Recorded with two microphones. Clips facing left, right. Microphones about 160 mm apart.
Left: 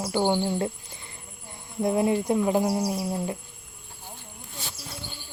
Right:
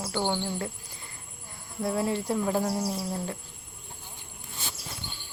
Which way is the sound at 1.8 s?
20° left (ahead or behind).